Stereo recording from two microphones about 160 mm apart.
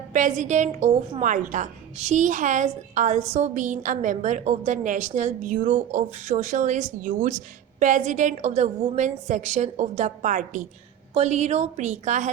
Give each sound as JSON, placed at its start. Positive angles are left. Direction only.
{"t": 0.1, "sound": "a woman's voice", "side_deg": -55}